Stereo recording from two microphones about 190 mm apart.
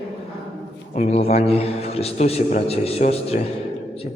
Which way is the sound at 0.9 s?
35° left (ahead or behind).